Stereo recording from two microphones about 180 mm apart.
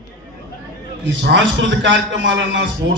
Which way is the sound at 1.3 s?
90° right.